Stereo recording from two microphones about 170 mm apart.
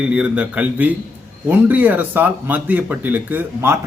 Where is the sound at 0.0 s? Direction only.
5° right (ahead or behind).